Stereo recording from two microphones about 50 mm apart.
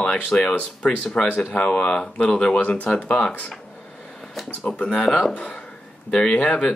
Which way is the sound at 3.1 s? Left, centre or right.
Centre.